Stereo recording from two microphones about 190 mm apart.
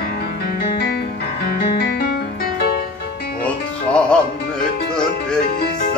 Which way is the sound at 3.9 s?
5° left (ahead or behind).